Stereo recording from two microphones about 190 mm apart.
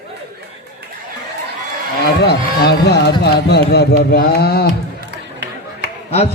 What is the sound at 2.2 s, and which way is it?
Speech, 60° left (ahead or behind).